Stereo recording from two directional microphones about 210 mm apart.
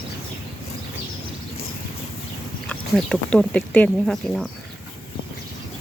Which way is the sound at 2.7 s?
Centre (ahead or behind).